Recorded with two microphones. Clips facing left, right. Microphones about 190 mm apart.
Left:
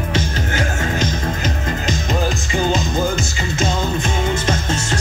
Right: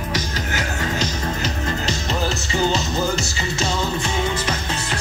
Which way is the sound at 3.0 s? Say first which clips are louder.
Left 2 dB; 55° left (ahead or behind).